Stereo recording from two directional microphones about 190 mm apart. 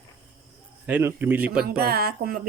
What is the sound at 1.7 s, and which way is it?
Speech, 55° right (ahead or behind).